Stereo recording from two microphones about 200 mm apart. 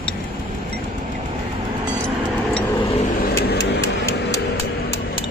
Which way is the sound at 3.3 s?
55° left (ahead or behind).